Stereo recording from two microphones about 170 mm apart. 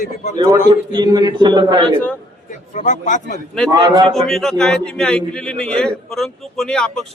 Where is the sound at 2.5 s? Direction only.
45° left (ahead or behind).